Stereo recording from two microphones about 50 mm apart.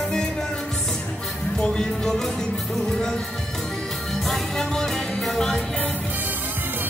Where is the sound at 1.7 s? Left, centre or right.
Centre.